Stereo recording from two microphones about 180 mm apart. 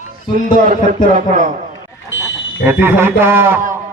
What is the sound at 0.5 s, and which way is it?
Speech, 50° right (ahead or behind).